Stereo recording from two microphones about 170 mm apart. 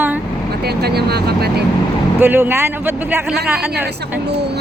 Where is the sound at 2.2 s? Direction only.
10° right (ahead or behind).